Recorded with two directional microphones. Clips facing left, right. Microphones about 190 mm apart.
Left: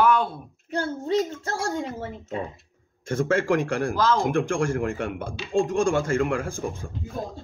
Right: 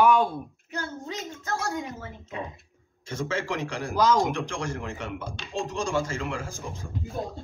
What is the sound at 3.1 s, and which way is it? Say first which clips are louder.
Speech: left 8 dB; 50° left (ahead or behind).